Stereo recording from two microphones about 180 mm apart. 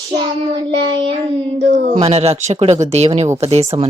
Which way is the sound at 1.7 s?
35° right (ahead or behind).